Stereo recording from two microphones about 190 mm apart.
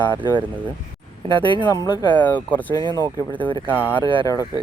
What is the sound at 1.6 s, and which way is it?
Speech, 20° left (ahead or behind).